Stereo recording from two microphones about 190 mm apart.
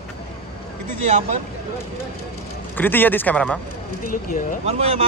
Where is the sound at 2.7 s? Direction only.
10° left (ahead or behind).